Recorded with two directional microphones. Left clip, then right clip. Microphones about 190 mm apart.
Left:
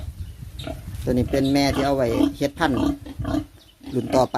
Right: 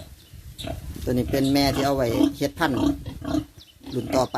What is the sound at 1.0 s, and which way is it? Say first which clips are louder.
Speech: left 2 dB; 10° left (ahead or behind).